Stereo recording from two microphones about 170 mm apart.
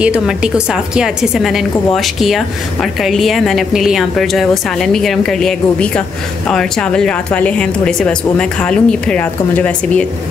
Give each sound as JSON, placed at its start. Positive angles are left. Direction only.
{"t": 0.0, "sound": "a woman's voice", "side_deg": -5}